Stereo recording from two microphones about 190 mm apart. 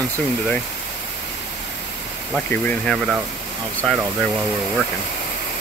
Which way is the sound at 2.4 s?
5° left (ahead or behind).